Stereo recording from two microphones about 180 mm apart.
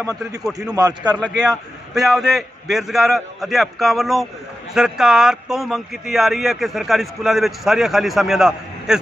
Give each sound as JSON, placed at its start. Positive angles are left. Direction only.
{"t": 0.0, "sound": "speech", "side_deg": -20}
{"t": 0.4, "sound": "speech", "side_deg": 0}
{"t": 0.7, "sound": "speech", "side_deg": -20}
{"t": 1.2, "sound": "speech", "side_deg": 0}